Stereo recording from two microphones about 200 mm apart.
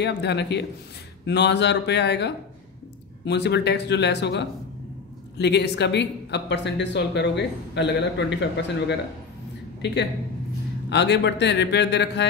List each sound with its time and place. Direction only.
0.0 s speech: 60° left (ahead or behind)
10.9 s speech: 60° left (ahead or behind)